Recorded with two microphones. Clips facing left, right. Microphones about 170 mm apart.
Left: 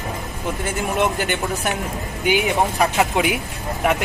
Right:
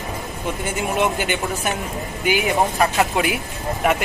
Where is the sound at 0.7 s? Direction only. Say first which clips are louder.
Even; centre (ahead or behind).